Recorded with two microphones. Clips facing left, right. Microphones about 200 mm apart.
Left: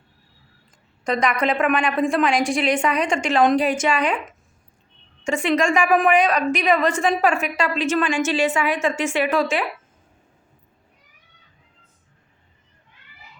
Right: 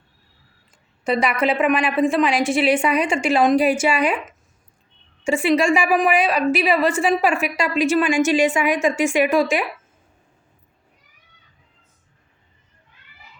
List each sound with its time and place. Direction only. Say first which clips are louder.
1.0 s a woman's voice: right 1 dB; 5° right (ahead or behind)